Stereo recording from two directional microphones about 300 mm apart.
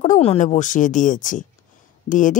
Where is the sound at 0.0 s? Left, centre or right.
Left.